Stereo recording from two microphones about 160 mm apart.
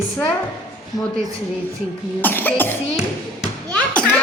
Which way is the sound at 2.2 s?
10° left (ahead or behind).